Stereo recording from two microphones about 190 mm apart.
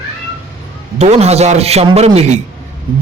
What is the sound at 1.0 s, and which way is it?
A man's voice, 35° right (ahead or behind).